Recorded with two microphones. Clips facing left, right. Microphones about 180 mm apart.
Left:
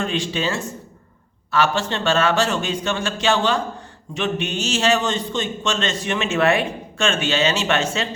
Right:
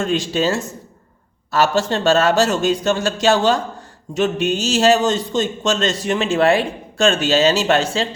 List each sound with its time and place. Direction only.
0.0 s a man's voice: 40° right (ahead or behind)